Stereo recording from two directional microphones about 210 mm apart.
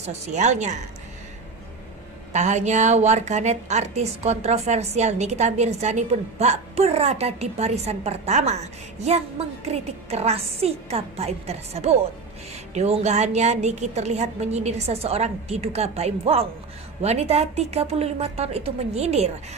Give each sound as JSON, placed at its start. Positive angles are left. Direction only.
{"t": 0.0, "sound": "a woman's voice", "side_deg": -35}
{"t": 2.3, "sound": "a woman's voice", "side_deg": -35}